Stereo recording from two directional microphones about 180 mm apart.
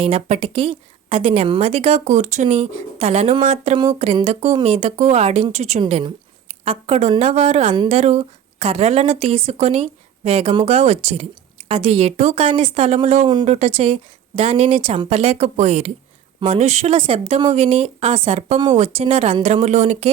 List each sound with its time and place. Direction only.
0.0 s a woman's voice: 30° right (ahead or behind)